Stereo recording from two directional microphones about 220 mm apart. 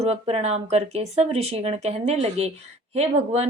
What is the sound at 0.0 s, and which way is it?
A woman's voice, 30° right (ahead or behind).